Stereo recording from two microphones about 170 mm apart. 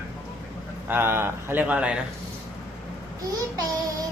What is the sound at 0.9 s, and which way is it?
A man's voice, 10° right (ahead or behind).